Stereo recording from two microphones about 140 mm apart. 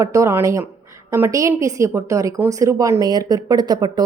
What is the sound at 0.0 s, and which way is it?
A woman's voice, 20° right (ahead or behind).